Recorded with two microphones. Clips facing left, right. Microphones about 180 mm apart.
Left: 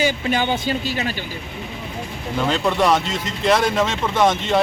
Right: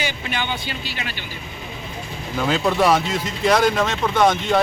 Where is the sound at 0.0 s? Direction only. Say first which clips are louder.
Left 6 dB; 40° left (ahead or behind).